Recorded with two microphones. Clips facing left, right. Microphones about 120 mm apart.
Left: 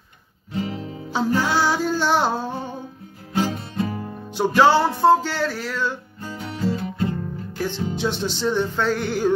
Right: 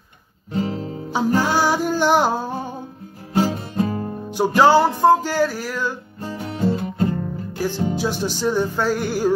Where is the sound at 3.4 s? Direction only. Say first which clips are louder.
Right 3 dB; 45° right (ahead or behind).